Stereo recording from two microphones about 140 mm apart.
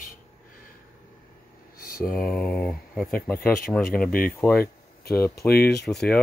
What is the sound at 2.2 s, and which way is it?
Speech, 5° left (ahead or behind).